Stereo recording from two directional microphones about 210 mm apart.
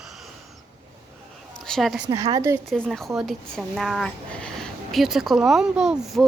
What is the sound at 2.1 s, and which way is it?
Speech, 20° right (ahead or behind).